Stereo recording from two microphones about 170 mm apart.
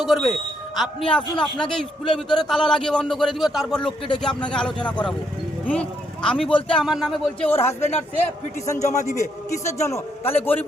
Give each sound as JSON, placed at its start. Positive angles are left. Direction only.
{"t": 0.0, "sound": "speech", "side_deg": 0}
{"t": 8.1, "sound": "a man's voice", "side_deg": 15}
{"t": 8.8, "sound": "a man's voice", "side_deg": 45}
{"t": 9.1, "sound": "a man's voice", "side_deg": 15}